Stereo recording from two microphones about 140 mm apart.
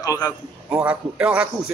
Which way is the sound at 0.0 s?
25° left (ahead or behind).